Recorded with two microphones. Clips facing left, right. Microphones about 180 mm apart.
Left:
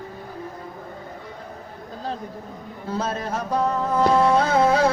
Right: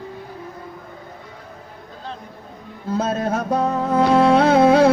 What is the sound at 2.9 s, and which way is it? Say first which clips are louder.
Music: right 6 dB; 55° right (ahead or behind).